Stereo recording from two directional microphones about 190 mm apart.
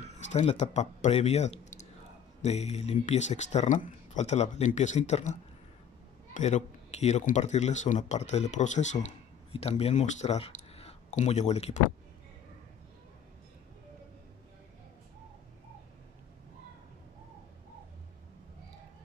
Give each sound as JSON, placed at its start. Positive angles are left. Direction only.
{"t": 0.3, "sound": "speech", "side_deg": 35}